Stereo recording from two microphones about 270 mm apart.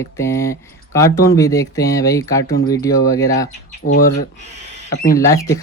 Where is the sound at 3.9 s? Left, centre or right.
Left.